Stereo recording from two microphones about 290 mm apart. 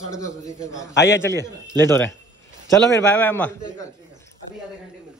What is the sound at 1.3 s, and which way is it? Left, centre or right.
Speech, centre.